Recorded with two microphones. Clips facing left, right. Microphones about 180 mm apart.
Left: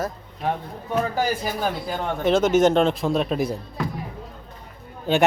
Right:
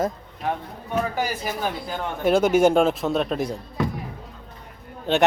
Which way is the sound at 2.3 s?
10° right (ahead or behind).